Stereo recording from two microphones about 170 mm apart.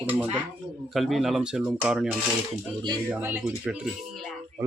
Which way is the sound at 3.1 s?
10° right (ahead or behind).